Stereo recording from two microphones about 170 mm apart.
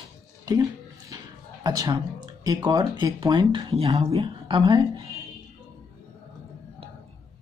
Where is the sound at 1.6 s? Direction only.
20° right (ahead or behind).